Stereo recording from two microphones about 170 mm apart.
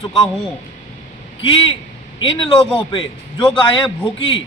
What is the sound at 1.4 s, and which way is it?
A man's voice, 30° left (ahead or behind).